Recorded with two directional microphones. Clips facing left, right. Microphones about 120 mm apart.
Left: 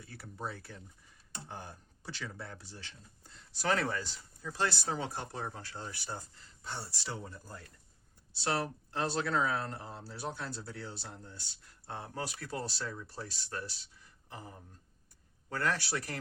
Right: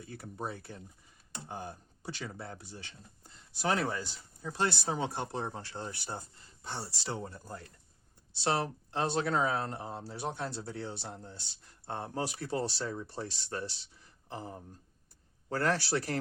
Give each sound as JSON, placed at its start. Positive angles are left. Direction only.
{"t": 0.0, "sound": "speech", "side_deg": -20}
{"t": 8.4, "sound": "a man's voice", "side_deg": -20}